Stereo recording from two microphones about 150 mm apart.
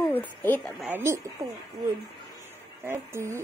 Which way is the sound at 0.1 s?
10° left (ahead or behind).